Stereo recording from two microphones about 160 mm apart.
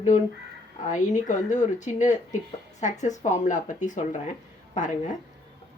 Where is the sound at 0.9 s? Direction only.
50° left (ahead or behind).